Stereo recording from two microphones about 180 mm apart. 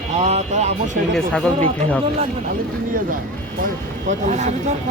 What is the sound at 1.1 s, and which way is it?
Speech, 5° left (ahead or behind).